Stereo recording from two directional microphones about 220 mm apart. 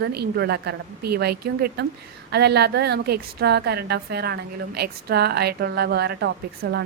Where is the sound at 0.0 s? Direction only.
50° right (ahead or behind).